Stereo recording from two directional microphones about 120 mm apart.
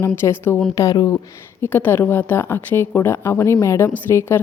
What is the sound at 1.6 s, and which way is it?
A woman's voice, 15° left (ahead or behind).